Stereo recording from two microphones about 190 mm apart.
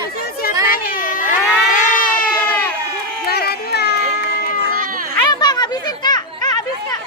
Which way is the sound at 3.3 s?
55° left (ahead or behind).